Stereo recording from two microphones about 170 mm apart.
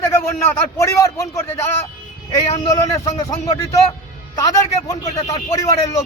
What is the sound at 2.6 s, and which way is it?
A man's voice, 20° left (ahead or behind).